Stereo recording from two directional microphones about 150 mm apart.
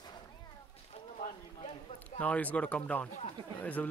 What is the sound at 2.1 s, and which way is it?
Speech, 10° left (ahead or behind).